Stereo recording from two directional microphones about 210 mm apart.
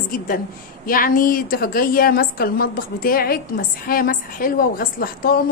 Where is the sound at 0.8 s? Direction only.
40° left (ahead or behind).